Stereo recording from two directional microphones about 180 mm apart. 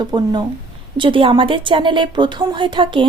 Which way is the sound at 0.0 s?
25° right (ahead or behind).